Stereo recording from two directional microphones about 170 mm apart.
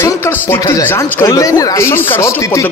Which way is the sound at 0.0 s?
15° left (ahead or behind).